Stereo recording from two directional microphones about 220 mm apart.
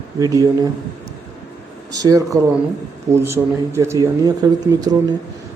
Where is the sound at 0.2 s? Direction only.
15° right (ahead or behind).